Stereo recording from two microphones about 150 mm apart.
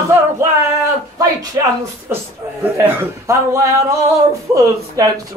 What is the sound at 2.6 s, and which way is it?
Speech, 15° right (ahead or behind).